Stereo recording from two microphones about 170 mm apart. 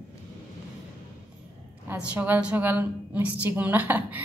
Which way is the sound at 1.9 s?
10° right (ahead or behind).